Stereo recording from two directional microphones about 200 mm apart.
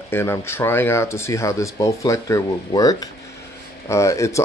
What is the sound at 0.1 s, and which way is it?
Speech, 10° left (ahead or behind).